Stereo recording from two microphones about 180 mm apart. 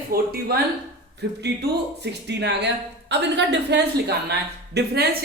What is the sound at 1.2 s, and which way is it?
A woman's voice, 70° right (ahead or behind).